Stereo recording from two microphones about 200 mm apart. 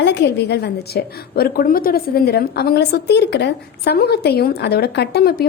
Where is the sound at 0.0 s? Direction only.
60° left (ahead or behind).